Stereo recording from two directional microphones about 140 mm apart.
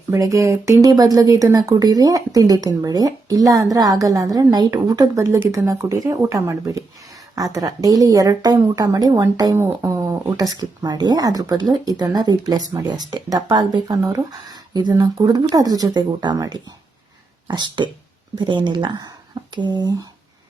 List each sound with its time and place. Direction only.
0.1 s a woman's voice: 25° right (ahead or behind)